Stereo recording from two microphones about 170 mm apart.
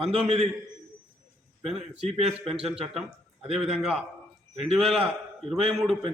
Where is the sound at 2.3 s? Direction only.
5° right (ahead or behind).